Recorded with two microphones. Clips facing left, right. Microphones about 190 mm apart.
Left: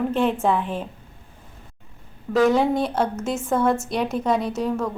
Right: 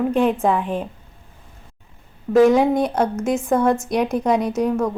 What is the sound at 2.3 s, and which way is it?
Speech, 20° right (ahead or behind).